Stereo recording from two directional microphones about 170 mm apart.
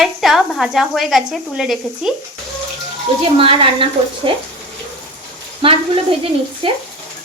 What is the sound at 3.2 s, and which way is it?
Speech, 30° right (ahead or behind).